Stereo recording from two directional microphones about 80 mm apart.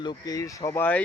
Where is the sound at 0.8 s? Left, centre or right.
Left.